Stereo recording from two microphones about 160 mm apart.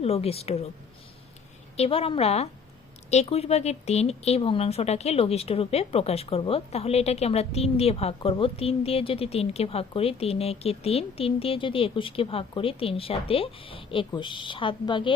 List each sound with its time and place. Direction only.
0.0 s speech: 40° left (ahead or behind)
1.7 s speech: 40° left (ahead or behind)